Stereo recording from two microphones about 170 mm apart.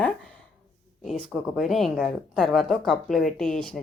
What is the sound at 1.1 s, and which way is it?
Speech, centre (ahead or behind).